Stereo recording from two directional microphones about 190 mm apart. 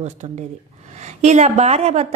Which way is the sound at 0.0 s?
35° right (ahead or behind).